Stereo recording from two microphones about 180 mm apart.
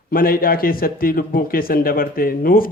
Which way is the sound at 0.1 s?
55° left (ahead or behind).